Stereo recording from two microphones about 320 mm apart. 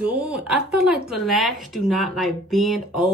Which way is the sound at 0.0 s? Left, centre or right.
Centre.